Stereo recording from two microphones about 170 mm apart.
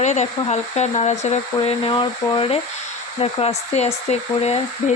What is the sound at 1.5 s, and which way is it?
Speech, 30° left (ahead or behind).